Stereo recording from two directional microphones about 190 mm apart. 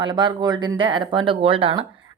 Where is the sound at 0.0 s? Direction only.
25° right (ahead or behind).